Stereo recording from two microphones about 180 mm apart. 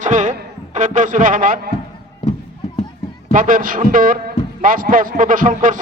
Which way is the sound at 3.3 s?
50° right (ahead or behind).